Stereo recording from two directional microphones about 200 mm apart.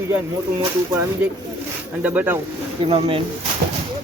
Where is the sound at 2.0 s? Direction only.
10° right (ahead or behind).